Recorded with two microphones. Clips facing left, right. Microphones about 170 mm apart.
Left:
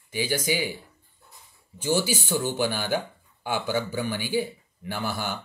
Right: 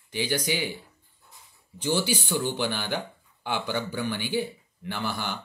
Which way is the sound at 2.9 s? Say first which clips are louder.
Left 4 dB; 5° left (ahead or behind).